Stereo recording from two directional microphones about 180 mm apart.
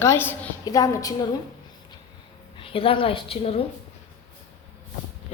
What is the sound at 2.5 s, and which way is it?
A woman's voice, 30° left (ahead or behind).